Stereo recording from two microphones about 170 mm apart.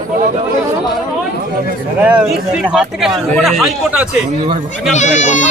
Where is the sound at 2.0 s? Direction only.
10° right (ahead or behind).